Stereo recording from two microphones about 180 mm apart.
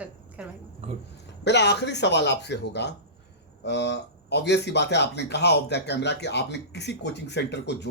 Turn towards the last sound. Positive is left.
turn(degrees=70)  # may be behind; listen again after turning